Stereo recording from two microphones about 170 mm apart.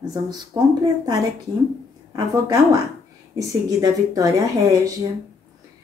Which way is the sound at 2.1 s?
20° right (ahead or behind).